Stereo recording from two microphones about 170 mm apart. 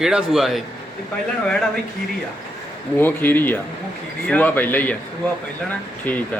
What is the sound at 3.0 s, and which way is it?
Speech, 10° left (ahead or behind).